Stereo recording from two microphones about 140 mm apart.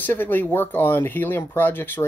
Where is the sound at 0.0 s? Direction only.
15° left (ahead or behind).